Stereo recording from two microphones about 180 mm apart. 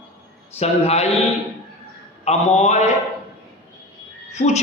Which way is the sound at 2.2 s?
40° left (ahead or behind).